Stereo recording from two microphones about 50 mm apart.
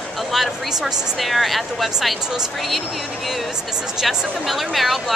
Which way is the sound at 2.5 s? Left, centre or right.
Centre.